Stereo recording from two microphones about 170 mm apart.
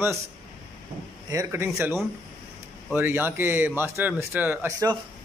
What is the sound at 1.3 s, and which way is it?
Speech, 15° right (ahead or behind).